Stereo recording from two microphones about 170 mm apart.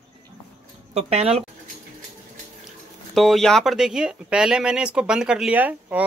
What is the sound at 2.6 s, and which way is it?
Speech, centre (ahead or behind).